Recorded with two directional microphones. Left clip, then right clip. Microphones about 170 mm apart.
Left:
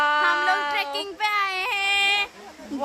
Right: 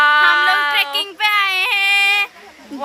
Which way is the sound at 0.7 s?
5° right (ahead or behind).